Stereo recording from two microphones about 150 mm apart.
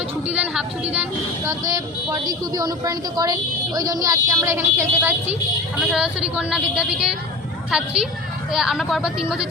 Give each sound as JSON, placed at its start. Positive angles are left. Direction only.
{"t": 0.3, "sound": "a woman's voice", "side_deg": -10}
{"t": 1.5, "sound": "a woman's voice", "side_deg": -20}